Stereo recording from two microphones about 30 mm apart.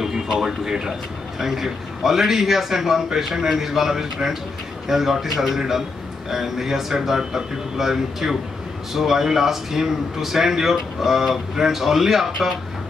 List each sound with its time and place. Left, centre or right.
0.0 s a man's voice: centre